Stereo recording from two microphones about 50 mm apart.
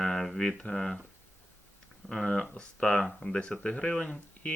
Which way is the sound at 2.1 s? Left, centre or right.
Centre.